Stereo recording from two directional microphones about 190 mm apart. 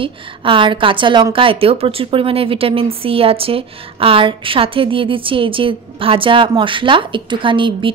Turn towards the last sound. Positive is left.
turn(degrees=-25)  # may be behind; listen again after turning